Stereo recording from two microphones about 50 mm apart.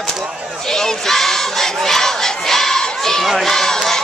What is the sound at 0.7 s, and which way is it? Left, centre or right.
Battle cry, centre.